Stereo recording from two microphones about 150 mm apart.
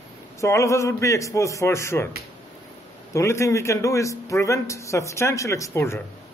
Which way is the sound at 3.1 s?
20° left (ahead or behind).